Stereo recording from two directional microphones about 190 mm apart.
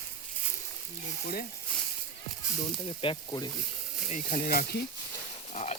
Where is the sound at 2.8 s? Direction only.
25° left (ahead or behind).